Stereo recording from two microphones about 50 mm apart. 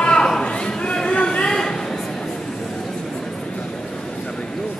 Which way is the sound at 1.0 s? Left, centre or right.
Left.